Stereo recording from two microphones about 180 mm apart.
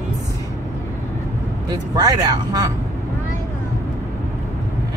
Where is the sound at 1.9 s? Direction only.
20° right (ahead or behind).